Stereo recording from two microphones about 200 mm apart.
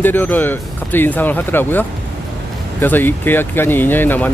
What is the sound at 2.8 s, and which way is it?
Speech, 10° left (ahead or behind).